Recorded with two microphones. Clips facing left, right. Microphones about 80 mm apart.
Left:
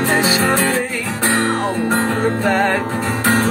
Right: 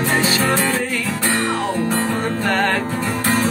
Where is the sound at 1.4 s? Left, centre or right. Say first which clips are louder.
Left 3 dB; left.